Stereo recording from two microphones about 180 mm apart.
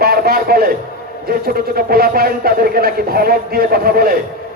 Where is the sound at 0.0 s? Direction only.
60° right (ahead or behind).